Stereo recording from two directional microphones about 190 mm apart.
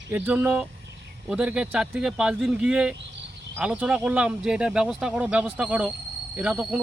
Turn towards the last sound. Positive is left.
turn(degrees=0)  # may be behind; listen again after turning